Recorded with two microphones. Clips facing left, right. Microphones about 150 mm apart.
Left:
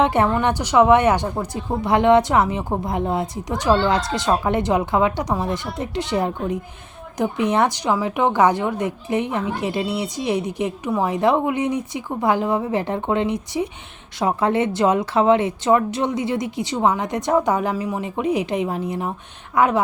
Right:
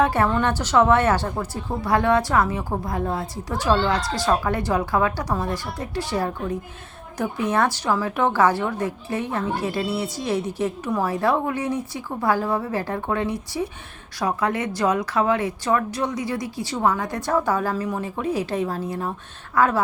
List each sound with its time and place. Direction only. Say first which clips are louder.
0.0 s a woman's voice: left 2 dB; 20° left (ahead or behind)